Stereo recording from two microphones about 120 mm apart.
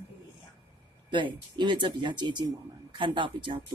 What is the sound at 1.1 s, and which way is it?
Speech, 40° right (ahead or behind).